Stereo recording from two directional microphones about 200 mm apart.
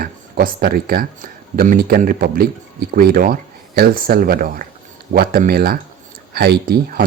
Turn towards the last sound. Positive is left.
turn(degrees=-45)  # may be behind; listen again after turning